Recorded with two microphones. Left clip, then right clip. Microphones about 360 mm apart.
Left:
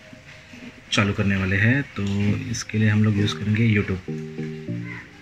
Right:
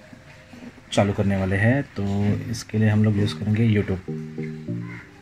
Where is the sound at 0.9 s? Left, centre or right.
Centre.